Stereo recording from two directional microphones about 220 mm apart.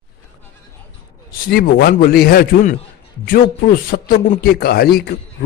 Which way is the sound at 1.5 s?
45° left (ahead or behind).